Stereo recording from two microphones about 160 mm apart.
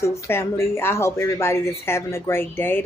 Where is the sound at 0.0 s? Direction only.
15° left (ahead or behind).